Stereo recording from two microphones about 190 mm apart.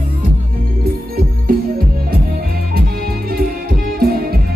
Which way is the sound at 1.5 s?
50° right (ahead or behind).